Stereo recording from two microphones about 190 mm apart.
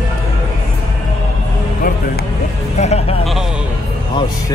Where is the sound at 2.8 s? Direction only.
35° left (ahead or behind).